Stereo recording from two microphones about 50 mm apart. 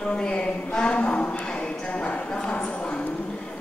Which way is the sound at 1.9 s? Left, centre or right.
Left.